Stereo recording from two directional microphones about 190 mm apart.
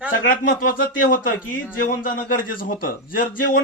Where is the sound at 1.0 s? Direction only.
45° left (ahead or behind).